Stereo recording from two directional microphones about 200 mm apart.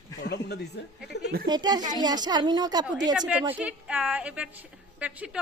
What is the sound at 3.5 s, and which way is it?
A woman's voice, 5° right (ahead or behind).